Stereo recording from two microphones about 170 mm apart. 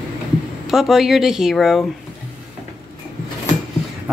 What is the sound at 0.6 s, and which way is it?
Speech, centre (ahead or behind).